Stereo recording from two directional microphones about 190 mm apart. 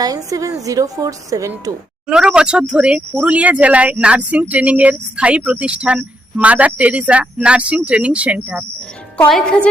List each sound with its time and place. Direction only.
0.0 s speech: 20° right (ahead or behind)
2.0 s speech: 5° right (ahead or behind)
9.3 s speech: 5° left (ahead or behind)